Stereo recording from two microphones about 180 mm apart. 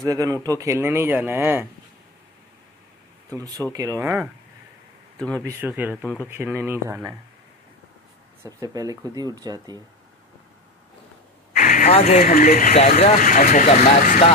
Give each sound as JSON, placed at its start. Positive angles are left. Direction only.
{"t": 0.0, "sound": "speech", "side_deg": -20}
{"t": 3.3, "sound": "speech", "side_deg": -20}
{"t": 5.4, "sound": "speech", "side_deg": -15}
{"t": 8.5, "sound": "speech", "side_deg": -20}
{"t": 11.5, "sound": "a sound", "side_deg": 45}
{"t": 12.2, "sound": "speech", "side_deg": 50}